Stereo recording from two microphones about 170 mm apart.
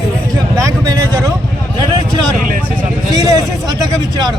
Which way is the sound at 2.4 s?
50° right (ahead or behind).